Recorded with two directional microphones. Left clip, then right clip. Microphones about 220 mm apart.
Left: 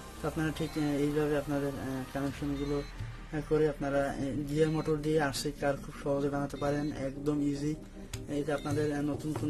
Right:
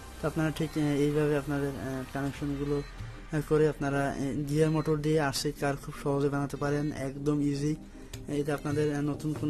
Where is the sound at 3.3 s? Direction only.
35° right (ahead or behind).